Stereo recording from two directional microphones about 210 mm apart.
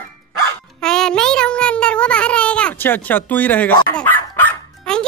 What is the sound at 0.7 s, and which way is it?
Child singing, 5° left (ahead or behind).